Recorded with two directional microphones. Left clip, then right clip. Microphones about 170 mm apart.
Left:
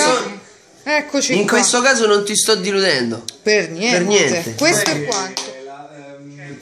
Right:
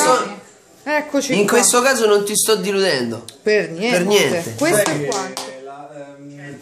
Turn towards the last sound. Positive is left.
turn(degrees=5)  # may be behind; listen again after turning